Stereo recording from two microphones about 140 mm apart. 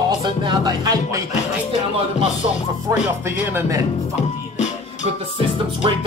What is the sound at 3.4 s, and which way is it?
Speech, 15° right (ahead or behind).